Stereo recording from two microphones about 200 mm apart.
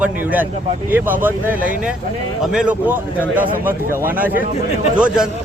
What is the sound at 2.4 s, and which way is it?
A man's voice, 5° right (ahead or behind).